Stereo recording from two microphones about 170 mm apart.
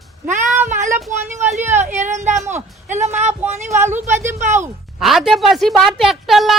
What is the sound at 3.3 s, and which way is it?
Speech, 15° right (ahead or behind).